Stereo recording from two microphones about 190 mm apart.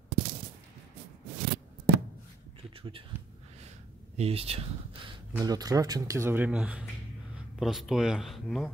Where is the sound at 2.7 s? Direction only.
30° right (ahead or behind).